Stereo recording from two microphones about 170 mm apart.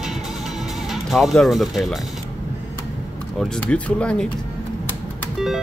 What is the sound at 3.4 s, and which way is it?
Speech, 5° left (ahead or behind).